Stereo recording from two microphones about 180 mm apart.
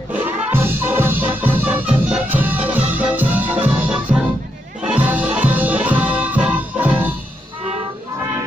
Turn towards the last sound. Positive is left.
turn(degrees=-10)  # may be behind; listen again after turning